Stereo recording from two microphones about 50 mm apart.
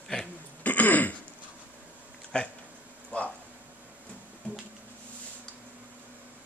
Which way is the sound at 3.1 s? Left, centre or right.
Left.